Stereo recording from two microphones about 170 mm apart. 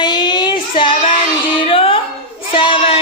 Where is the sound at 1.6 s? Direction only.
30° left (ahead or behind).